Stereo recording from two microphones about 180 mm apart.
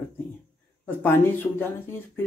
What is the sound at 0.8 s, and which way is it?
Speech, 10° left (ahead or behind).